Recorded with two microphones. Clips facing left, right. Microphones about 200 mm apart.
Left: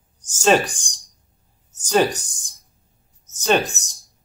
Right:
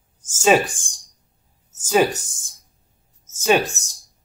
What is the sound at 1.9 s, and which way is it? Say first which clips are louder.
Speech: even; 5° right (ahead or behind).